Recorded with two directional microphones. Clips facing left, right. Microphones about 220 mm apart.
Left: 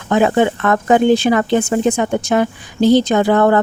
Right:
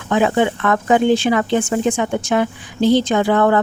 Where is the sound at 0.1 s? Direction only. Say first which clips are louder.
Left 2 dB; 45° left (ahead or behind).